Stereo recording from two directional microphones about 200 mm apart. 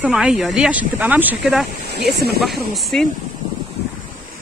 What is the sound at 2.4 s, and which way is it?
Speech, centre (ahead or behind).